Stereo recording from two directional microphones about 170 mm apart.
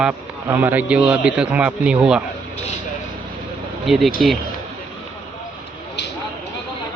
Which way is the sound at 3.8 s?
Centre (ahead or behind).